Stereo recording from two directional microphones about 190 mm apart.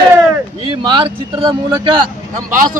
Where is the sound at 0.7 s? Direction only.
30° right (ahead or behind).